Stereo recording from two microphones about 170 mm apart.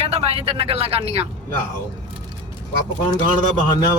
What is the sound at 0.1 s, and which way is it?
Speech, 35° right (ahead or behind).